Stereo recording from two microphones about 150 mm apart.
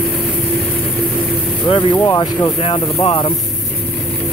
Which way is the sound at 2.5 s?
40° left (ahead or behind).